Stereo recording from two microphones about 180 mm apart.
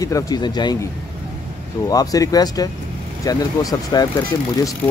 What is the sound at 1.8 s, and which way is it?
Speech, 20° left (ahead or behind).